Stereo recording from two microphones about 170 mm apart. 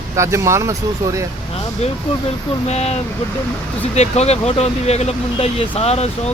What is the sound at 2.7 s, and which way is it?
Speech, 40° left (ahead or behind).